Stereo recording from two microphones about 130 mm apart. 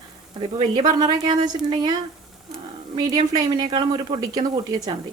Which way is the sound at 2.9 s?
30° right (ahead or behind).